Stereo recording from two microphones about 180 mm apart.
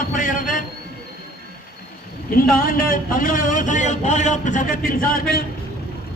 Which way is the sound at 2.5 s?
50° left (ahead or behind).